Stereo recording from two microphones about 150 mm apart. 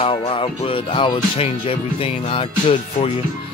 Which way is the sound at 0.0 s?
40° left (ahead or behind).